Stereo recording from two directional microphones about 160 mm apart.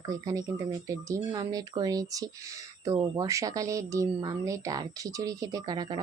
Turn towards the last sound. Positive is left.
turn(degrees=-25)  # may be behind; listen again after turning